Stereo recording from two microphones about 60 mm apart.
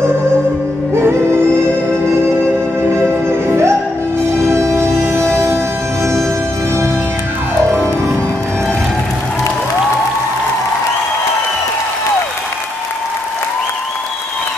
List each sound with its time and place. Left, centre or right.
0.9 s music: right
3.0 s music: right